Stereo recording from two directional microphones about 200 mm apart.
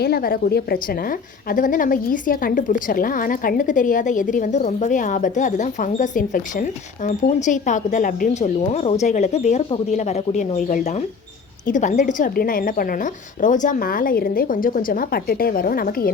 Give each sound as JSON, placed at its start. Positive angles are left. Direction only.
{"t": 0.0, "sound": "a woman's voice", "side_deg": 50}